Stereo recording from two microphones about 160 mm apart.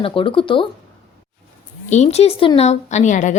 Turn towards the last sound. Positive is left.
turn(degrees=50)  # may be behind; listen again after turning